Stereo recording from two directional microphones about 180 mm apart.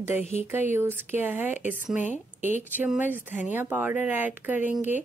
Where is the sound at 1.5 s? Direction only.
45° left (ahead or behind).